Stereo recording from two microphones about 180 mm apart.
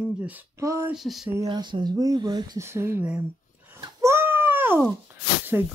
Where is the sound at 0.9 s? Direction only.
Centre (ahead or behind).